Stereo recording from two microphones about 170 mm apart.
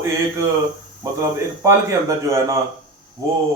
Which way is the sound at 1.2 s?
20° right (ahead or behind).